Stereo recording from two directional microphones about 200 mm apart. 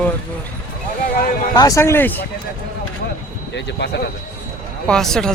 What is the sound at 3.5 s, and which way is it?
Speech, 60° left (ahead or behind).